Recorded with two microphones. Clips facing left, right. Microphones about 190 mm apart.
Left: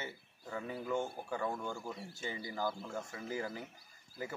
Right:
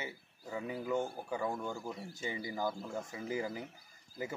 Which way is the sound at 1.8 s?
Centre (ahead or behind).